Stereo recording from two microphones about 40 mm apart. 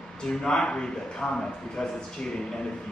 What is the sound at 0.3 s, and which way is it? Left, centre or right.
Speech, centre.